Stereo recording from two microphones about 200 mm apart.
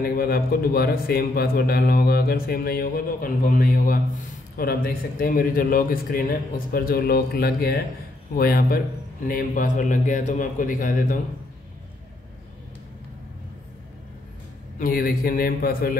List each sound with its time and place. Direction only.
0.0 s a man's voice: 50° left (ahead or behind)
14.8 s a man's voice: 45° left (ahead or behind)